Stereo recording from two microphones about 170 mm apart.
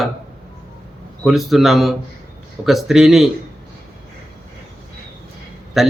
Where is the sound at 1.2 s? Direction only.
Centre (ahead or behind).